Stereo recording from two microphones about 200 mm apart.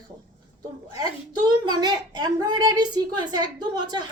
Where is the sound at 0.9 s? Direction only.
20° right (ahead or behind).